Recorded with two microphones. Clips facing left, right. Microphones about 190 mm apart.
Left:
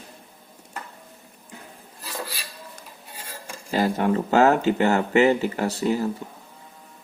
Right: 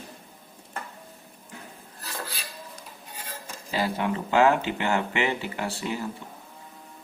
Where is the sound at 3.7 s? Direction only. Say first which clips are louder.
Left 5 dB; 45° left (ahead or behind).